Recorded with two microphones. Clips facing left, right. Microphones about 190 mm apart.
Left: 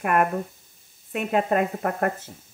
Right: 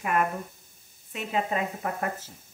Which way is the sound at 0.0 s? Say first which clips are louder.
Left 5 dB; 55° left (ahead or behind).